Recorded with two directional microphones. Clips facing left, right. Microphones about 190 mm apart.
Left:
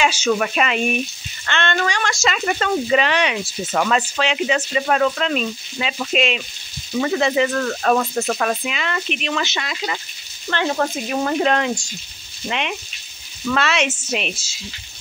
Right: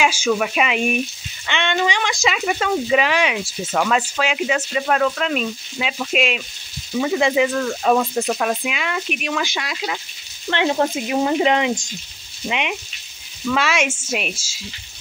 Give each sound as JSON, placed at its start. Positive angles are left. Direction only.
{"t": 0.0, "sound": "speech", "side_deg": -10}
{"t": 10.5, "sound": "speech", "side_deg": -20}